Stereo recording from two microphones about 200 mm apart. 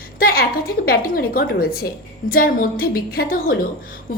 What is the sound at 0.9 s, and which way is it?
A woman's voice, 50° left (ahead or behind).